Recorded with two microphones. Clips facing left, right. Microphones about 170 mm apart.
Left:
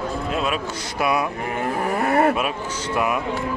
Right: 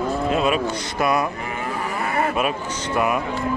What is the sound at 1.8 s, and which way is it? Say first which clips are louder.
Cattle: left 6 dB; 50° left (ahead or behind).